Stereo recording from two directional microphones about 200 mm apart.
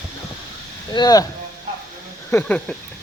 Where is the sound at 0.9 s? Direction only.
20° left (ahead or behind).